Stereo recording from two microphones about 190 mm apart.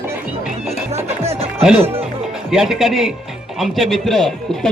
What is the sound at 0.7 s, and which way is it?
Music, 35° right (ahead or behind).